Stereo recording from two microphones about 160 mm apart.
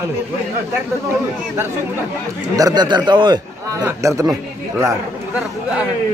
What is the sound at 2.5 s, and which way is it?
A man's voice, 25° right (ahead or behind).